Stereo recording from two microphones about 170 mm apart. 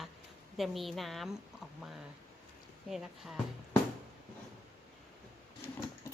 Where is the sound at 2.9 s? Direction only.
5° right (ahead or behind).